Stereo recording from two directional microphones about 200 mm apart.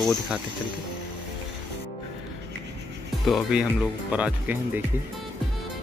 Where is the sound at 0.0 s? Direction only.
Centre (ahead or behind).